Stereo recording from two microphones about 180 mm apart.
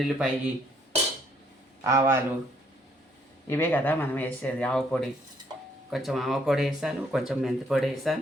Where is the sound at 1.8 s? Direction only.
15° right (ahead or behind).